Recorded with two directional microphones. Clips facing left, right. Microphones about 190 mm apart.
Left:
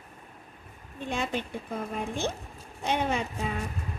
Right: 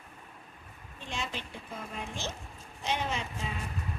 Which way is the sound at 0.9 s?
55° left (ahead or behind).